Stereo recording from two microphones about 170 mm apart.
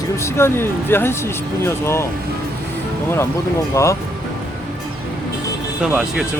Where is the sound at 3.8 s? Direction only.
15° left (ahead or behind).